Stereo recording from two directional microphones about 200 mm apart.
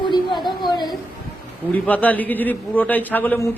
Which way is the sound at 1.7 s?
5° left (ahead or behind).